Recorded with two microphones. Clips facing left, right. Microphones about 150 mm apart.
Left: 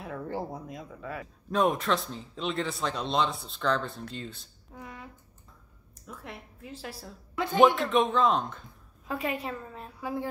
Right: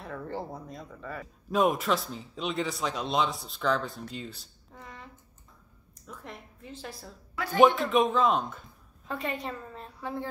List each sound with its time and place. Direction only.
0.0 s speech: 5° left (ahead or behind)
4.7 s finger snapping: 5° left (ahead or behind)
6.0 s speech: centre (ahead or behind)
7.3 s speech: 20° left (ahead or behind)
7.7 s a woman's voice: centre (ahead or behind)